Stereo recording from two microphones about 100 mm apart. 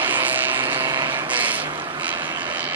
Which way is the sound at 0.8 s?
45° right (ahead or behind).